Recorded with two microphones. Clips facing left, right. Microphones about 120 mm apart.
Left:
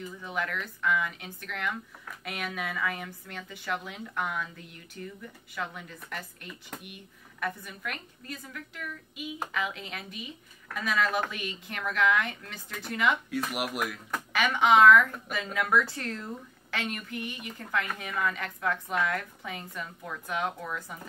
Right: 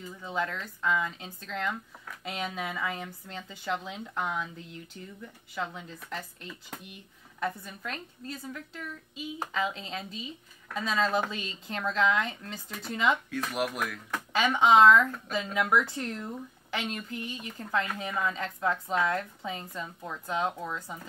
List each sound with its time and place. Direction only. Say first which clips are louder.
0.2 s a woman's voice: right 2 dB; 25° right (ahead or behind)
13.3 s speech: even; 10° left (ahead or behind)
14.3 s a woman's voice: right 1 dB; 25° right (ahead or behind)